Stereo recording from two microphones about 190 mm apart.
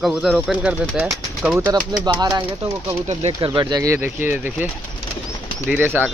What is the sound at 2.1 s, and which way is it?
Speech, 20° right (ahead or behind).